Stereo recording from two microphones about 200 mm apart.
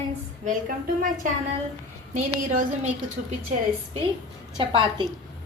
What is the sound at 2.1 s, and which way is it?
Speech, 35° right (ahead or behind).